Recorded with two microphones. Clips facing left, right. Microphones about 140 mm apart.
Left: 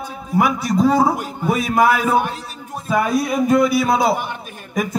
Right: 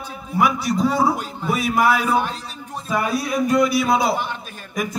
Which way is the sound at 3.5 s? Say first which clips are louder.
Left 2 dB; 50° left (ahead or behind).